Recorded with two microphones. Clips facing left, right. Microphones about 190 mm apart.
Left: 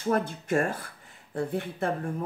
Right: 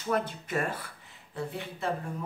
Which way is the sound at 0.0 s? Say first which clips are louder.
Left 3 dB; 45° left (ahead or behind).